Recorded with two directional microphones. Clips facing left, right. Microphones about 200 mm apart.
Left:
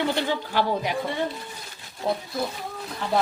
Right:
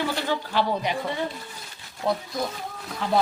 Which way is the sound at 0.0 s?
15° left (ahead or behind).